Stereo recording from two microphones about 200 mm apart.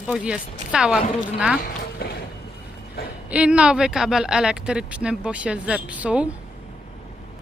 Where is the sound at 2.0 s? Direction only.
50° left (ahead or behind).